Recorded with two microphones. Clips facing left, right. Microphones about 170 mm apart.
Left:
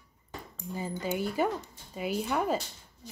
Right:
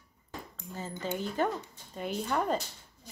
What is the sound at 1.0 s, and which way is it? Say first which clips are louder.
Speech: left 1 dB; 10° left (ahead or behind).